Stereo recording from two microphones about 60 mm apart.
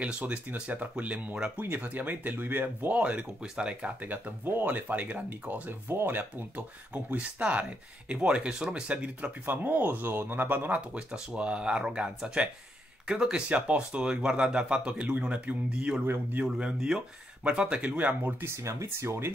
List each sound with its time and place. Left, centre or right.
0.0 s speech: right
1.6 s speech: right
3.0 s speech: right
4.5 s speech: right
8.5 s speech: centre
8.9 s speech: right
11.0 s speech: centre
18.6 s speech: right